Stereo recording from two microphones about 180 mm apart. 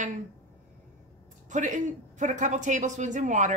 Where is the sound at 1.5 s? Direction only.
45° right (ahead or behind).